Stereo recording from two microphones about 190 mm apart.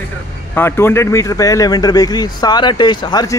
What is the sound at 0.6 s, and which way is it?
Speech, 10° left (ahead or behind).